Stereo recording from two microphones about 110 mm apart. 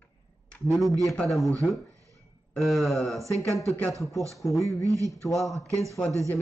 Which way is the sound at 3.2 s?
30° right (ahead or behind).